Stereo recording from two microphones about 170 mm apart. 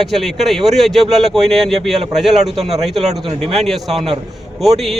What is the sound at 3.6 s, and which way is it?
Speech, centre (ahead or behind).